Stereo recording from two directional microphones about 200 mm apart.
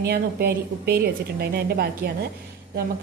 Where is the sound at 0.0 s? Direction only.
50° right (ahead or behind).